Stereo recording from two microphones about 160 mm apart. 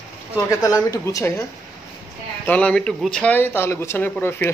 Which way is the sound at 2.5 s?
5° left (ahead or behind).